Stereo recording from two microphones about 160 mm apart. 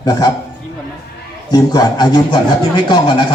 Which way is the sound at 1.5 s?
25° left (ahead or behind).